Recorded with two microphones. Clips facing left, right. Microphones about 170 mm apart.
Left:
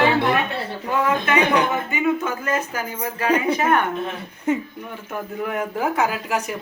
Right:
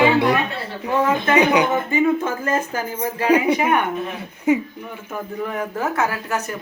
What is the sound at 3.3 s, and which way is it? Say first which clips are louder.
Speech: right 2 dB; 20° right (ahead or behind).